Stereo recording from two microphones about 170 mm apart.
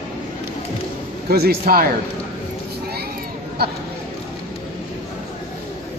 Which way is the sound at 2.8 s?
65° right (ahead or behind).